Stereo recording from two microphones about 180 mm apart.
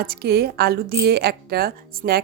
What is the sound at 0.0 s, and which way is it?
A woman's voice, 60° right (ahead or behind).